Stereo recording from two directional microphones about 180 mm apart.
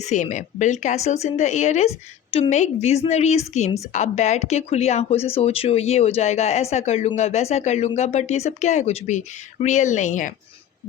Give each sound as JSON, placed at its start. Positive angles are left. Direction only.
{"t": 0.0, "sound": "speech", "side_deg": 40}